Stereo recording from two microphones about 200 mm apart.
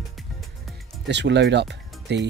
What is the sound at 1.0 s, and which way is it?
Speech, 60° right (ahead or behind).